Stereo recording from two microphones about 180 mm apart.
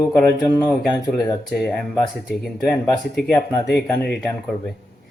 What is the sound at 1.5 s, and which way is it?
Speech, 5° left (ahead or behind).